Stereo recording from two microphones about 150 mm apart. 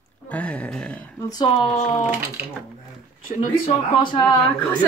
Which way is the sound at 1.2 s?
25° left (ahead or behind).